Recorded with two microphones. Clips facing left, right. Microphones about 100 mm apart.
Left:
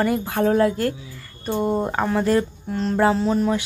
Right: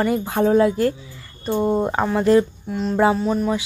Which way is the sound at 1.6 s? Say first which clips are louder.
Right 2 dB; centre (ahead or behind).